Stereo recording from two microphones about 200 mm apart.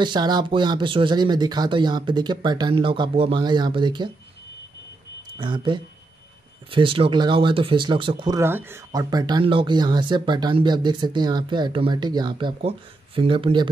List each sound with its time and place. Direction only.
0.0 s speech: 20° right (ahead or behind)
5.4 s speech: 25° right (ahead or behind)
8.4 s speech: 10° right (ahead or behind)